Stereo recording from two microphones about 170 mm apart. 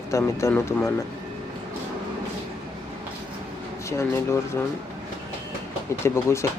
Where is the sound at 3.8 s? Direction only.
15° left (ahead or behind).